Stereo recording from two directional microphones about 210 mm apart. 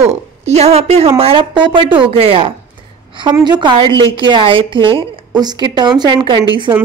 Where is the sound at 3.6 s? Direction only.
25° right (ahead or behind).